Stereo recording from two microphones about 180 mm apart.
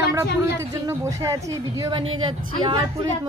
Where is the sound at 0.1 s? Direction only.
15° right (ahead or behind).